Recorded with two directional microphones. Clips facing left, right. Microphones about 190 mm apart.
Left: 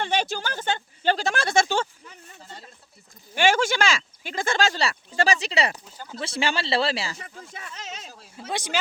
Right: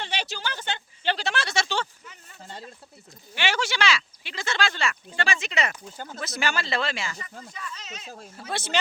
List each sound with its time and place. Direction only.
0.0 s speech: 50° left (ahead or behind)
3.3 s speech: 45° left (ahead or behind)
7.2 s speech: 60° left (ahead or behind)
8.0 s speech: 50° right (ahead or behind)
8.4 s speech: 15° left (ahead or behind)